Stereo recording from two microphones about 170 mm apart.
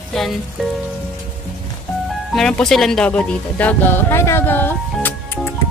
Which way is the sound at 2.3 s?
5° left (ahead or behind).